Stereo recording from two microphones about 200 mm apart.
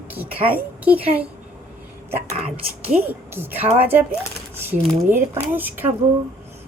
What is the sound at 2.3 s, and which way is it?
Speech, 30° right (ahead or behind).